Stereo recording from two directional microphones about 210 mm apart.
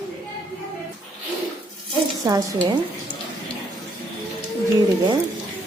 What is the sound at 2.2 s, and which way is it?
Speech, 15° right (ahead or behind).